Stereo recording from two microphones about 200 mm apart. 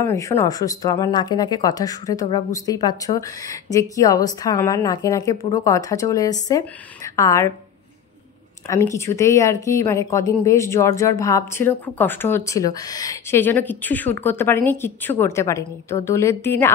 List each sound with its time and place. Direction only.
0.0 s speech: 15° left (ahead or behind)
8.6 s speech: 15° left (ahead or behind)